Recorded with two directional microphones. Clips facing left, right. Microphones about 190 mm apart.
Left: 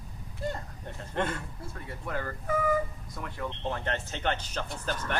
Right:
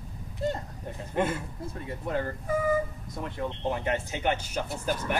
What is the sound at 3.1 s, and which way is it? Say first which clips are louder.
Speech: right 4 dB; 25° right (ahead or behind).